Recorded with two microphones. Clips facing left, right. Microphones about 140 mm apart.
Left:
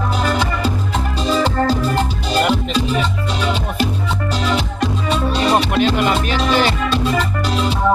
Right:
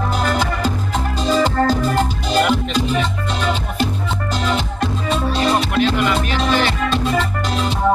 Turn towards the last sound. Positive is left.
turn(degrees=5)  # may be behind; listen again after turning